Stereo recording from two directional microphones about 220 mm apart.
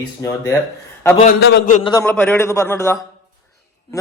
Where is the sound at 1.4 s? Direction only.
45° left (ahead or behind).